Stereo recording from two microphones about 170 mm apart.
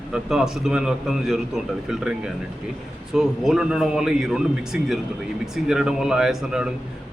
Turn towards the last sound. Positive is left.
turn(degrees=-5)  # may be behind; listen again after turning